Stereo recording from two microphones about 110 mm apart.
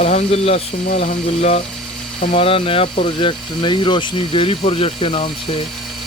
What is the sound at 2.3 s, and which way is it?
Speech, 60° left (ahead or behind).